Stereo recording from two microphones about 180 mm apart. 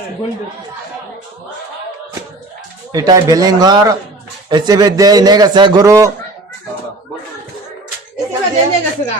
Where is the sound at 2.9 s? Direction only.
20° right (ahead or behind).